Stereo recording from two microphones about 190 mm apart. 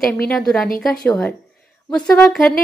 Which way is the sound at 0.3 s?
5° left (ahead or behind).